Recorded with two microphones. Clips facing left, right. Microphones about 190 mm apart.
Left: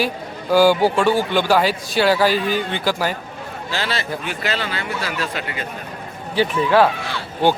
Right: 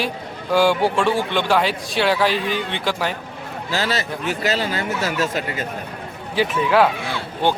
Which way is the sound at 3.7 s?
40° right (ahead or behind).